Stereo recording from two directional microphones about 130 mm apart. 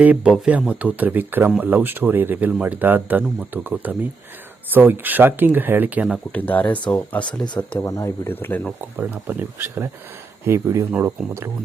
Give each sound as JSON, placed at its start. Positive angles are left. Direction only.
{"t": 0.0, "sound": "speech", "side_deg": -10}
{"t": 6.3, "sound": "speech", "side_deg": 15}
{"t": 7.4, "sound": "speech", "side_deg": 35}
{"t": 7.8, "sound": "speech", "side_deg": 25}
{"t": 9.0, "sound": "speech", "side_deg": -15}